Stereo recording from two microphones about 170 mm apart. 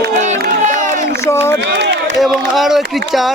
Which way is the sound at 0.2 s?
45° right (ahead or behind).